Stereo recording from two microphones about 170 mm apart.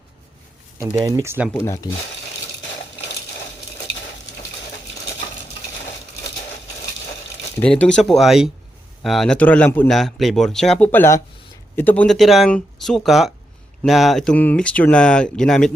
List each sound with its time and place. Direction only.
0.8 s speech: 20° right (ahead or behind)
1.6 s speech: 20° left (ahead or behind)
7.6 s speech: 5° left (ahead or behind)